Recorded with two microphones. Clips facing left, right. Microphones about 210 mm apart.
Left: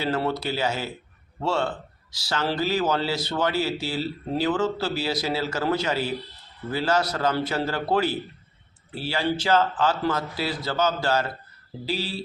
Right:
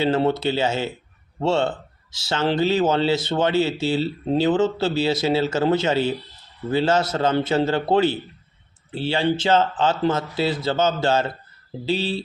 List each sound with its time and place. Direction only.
0.0 s speech: 25° right (ahead or behind)